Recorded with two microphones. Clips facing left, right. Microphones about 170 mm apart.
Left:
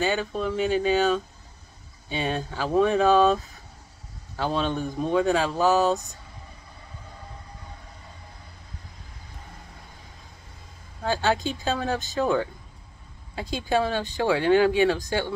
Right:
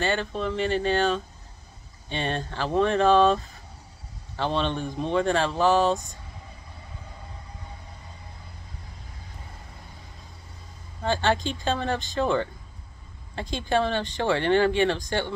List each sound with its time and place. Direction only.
0.0 s speech: 5° left (ahead or behind)
11.0 s speech: 5° left (ahead or behind)